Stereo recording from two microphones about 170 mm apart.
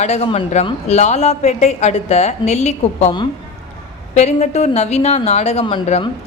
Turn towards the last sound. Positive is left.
turn(degrees=30)  # may be behind; listen again after turning